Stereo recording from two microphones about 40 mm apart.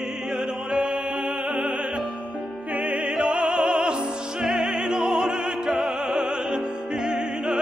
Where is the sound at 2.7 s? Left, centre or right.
Right.